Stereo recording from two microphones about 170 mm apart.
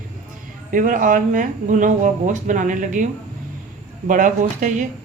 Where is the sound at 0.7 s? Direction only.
50° right (ahead or behind).